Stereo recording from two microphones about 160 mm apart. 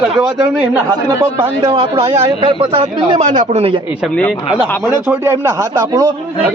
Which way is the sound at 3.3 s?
50° right (ahead or behind).